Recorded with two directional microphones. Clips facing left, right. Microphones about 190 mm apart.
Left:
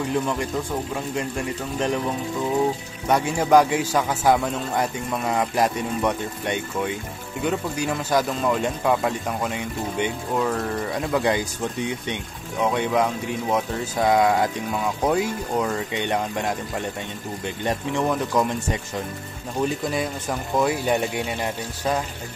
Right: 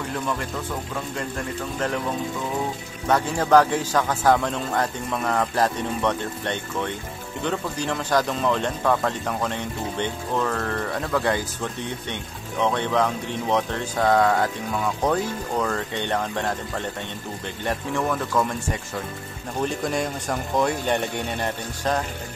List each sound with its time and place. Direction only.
0.1 s speech: 15° left (ahead or behind)
3.1 s speech: 10° left (ahead or behind)
19.6 s speech: 5° left (ahead or behind)